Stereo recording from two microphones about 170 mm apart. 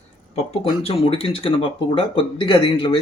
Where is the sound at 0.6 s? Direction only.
35° left (ahead or behind).